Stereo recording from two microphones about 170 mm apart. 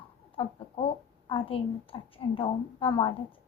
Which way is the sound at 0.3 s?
30° left (ahead or behind).